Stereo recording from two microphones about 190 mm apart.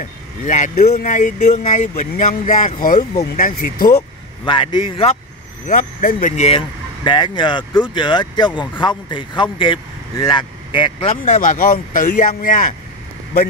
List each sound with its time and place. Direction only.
0.0 s speech: 40° left (ahead or behind)
4.5 s speech: 25° left (ahead or behind)
5.7 s speech: 45° left (ahead or behind)
7.1 s speech: 25° left (ahead or behind)
11.2 s speech: 45° left (ahead or behind)